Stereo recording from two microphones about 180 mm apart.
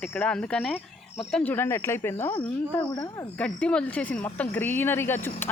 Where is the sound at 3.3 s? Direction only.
5° left (ahead or behind).